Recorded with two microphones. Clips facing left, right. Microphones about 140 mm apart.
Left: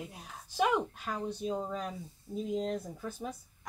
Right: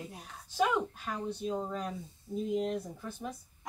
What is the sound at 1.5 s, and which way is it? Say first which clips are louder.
Speech: even; 5° left (ahead or behind).